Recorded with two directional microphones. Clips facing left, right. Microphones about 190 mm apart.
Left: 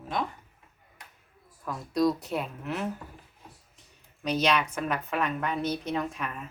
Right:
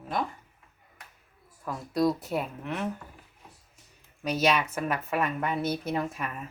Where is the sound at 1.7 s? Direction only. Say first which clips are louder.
Even; centre (ahead or behind).